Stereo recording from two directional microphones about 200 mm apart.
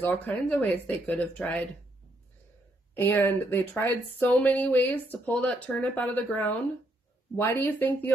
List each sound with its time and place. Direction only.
0.0 s speech: 10° left (ahead or behind)
2.9 s speech: 10° left (ahead or behind)